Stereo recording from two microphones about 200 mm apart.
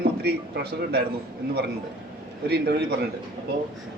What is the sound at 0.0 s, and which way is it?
A man's voice, 55° right (ahead or behind).